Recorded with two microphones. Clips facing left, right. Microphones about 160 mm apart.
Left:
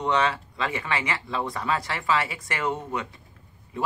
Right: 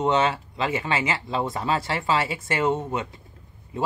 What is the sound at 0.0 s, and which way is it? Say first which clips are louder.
A man's voice: right 3 dB; 25° right (ahead or behind).